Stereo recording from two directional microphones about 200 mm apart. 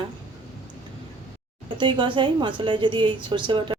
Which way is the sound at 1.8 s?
25° right (ahead or behind).